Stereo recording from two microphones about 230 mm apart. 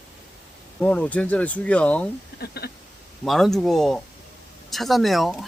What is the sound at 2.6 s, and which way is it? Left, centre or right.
Speech, left.